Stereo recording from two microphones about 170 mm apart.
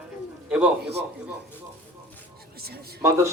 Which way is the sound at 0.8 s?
75° right (ahead or behind).